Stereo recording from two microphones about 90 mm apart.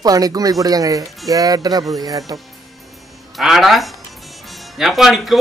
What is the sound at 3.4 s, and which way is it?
A man's voice, centre (ahead or behind).